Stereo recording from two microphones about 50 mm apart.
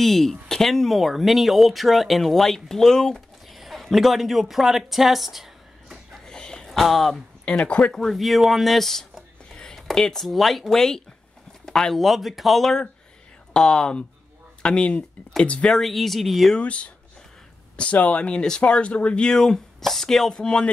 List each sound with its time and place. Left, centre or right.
0.0 s speech: centre
3.4 s a sound: centre
6.2 s a sound: centre
6.8 s speech: centre
7.4 s speech: left
7.8 s speech: centre
13.5 s speech: centre
15.6 s speech: centre
16.5 s speech: left